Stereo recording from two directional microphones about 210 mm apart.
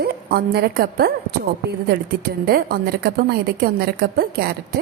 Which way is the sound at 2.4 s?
45° right (ahead or behind).